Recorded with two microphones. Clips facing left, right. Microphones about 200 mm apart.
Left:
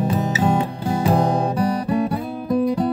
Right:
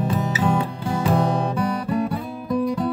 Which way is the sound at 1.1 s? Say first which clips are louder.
Left 2 dB; 40° left (ahead or behind).